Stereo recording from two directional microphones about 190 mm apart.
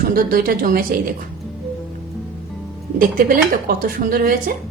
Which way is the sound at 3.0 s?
50° right (ahead or behind).